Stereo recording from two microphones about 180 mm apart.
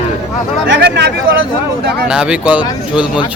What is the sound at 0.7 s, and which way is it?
Speech, 70° right (ahead or behind).